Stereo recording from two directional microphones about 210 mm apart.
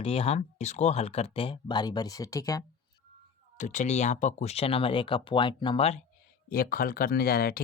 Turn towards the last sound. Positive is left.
turn(degrees=45)  # may be behind; listen again after turning